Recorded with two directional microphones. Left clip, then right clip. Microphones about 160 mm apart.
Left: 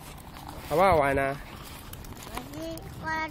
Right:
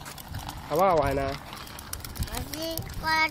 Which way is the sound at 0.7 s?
25° left (ahead or behind).